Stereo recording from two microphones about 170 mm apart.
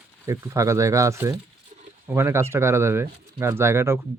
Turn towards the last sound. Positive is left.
turn(degrees=-15)  # may be behind; listen again after turning